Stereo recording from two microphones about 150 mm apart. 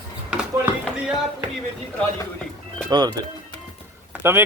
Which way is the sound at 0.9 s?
5° right (ahead or behind).